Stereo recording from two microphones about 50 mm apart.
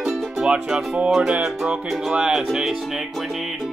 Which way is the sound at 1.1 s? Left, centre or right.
Centre.